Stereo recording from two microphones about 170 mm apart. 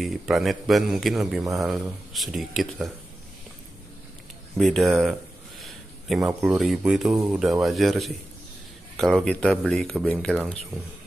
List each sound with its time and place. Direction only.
0.0 s speech: centre (ahead or behind)
4.6 s speech: centre (ahead or behind)